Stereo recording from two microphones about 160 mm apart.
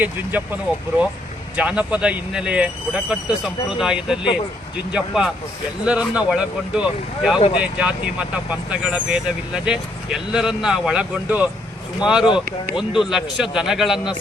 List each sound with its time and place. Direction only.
0.0 s speech: 10° right (ahead or behind)
1.5 s speech: 5° right (ahead or behind)
7.3 s speech: 30° left (ahead or behind)
7.6 s speech: 5° right (ahead or behind)